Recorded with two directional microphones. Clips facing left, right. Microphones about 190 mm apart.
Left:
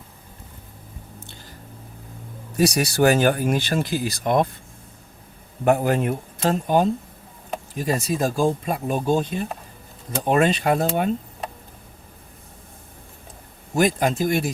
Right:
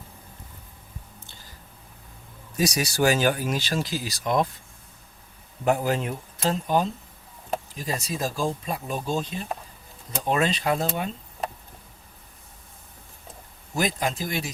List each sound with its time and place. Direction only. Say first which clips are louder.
2.6 s speech: left 5 dB; 60° left (ahead or behind)
5.6 s speech: left 5 dB; 55° left (ahead or behind)
13.7 s speech: left 7 dB; 50° left (ahead or behind)